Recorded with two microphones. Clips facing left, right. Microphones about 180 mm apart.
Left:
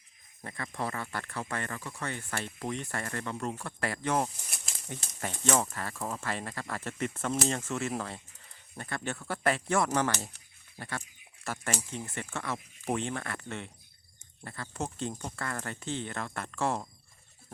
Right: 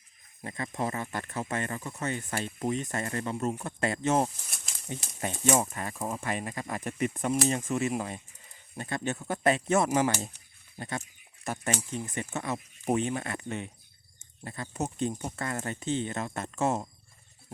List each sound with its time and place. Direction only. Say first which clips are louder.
0.4 s speech: right 3 dB; 20° right (ahead or behind)